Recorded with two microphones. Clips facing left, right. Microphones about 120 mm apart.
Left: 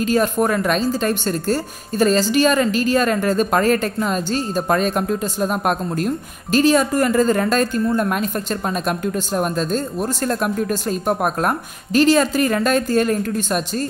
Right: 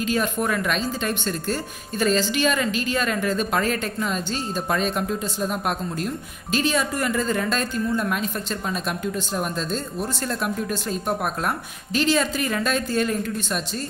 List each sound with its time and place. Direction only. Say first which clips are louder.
0.0 s a woman's voice: left 6 dB; 40° left (ahead or behind)